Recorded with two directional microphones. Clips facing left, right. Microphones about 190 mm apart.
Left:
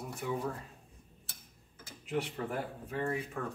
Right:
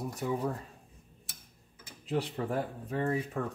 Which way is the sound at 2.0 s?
35° right (ahead or behind).